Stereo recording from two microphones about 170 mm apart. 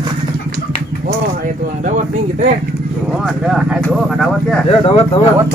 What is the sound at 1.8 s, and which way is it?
Speech, 50° right (ahead or behind).